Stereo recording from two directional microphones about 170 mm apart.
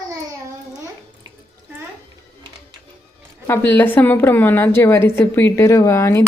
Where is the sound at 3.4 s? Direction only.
15° left (ahead or behind).